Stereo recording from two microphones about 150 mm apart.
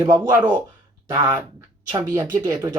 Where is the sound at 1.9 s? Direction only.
20° right (ahead or behind).